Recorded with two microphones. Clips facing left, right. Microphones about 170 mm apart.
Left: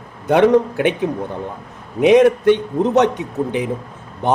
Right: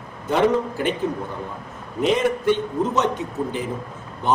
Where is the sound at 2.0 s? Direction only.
65° left (ahead or behind).